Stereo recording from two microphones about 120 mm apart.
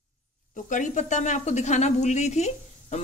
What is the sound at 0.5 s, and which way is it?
Speech, 90° left.